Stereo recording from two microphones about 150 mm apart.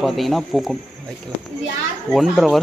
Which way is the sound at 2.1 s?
Centre (ahead or behind).